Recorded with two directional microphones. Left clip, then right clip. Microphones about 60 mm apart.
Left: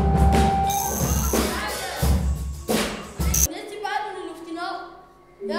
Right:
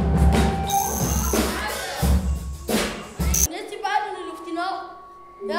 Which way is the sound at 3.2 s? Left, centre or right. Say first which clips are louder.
Even; centre.